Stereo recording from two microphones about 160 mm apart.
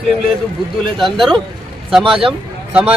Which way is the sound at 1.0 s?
Centre (ahead or behind).